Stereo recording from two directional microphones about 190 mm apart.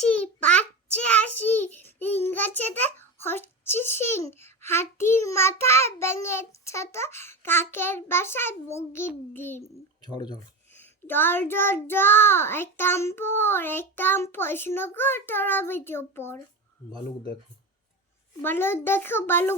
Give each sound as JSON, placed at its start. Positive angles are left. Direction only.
{"t": 0.0, "sound": "child singing", "side_deg": 5}
{"t": 10.0, "sound": "speech", "side_deg": 20}
{"t": 10.7, "sound": "child singing", "side_deg": 10}
{"t": 18.4, "sound": "child singing", "side_deg": 10}